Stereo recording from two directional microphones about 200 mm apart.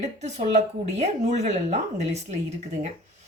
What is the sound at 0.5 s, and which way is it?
A woman's voice, 35° right (ahead or behind).